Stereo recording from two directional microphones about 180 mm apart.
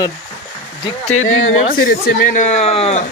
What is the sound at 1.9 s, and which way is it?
A man's voice, 50° left (ahead or behind).